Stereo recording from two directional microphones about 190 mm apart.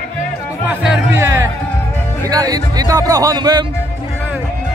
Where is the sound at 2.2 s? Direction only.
20° right (ahead or behind).